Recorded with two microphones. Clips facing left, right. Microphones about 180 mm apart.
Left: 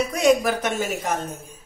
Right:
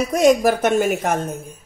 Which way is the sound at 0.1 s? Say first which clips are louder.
Right 6 dB; 45° right (ahead or behind).